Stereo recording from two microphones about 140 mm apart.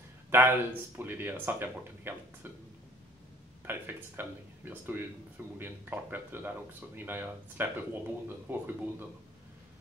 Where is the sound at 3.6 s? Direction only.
15° right (ahead or behind).